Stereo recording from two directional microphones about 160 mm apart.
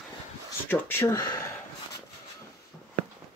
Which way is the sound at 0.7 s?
15° left (ahead or behind).